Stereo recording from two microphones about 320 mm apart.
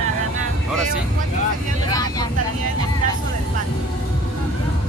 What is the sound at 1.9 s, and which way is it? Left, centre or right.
Vehicle, centre.